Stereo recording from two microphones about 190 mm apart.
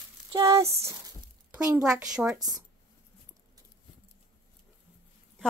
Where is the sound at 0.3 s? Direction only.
20° right (ahead or behind).